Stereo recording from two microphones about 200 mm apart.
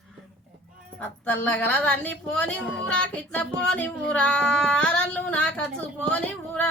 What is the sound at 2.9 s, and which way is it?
Music, 5° left (ahead or behind).